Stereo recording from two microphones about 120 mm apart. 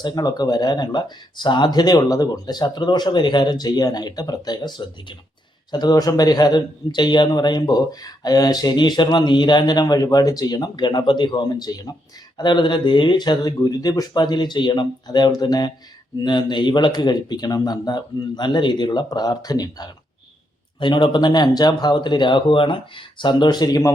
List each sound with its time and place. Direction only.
0.0 s a man's voice: 35° left (ahead or behind)